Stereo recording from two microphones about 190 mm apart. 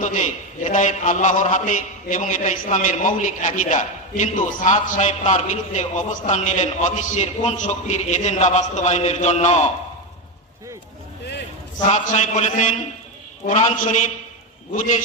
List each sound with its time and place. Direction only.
0.0 s a man's voice: 40° left (ahead or behind)
11.9 s a man's voice: 40° left (ahead or behind)